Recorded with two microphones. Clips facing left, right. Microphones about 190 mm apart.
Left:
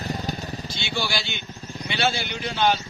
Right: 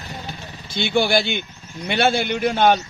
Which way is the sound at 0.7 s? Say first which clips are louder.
Right 12 dB; 55° right (ahead or behind).